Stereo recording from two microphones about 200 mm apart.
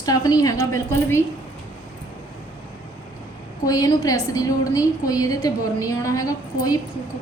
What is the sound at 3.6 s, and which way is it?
A woman's voice, 20° left (ahead or behind).